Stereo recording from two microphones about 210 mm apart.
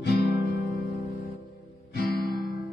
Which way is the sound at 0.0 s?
50° left (ahead or behind).